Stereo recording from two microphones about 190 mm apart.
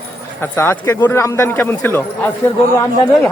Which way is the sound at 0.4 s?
10° left (ahead or behind).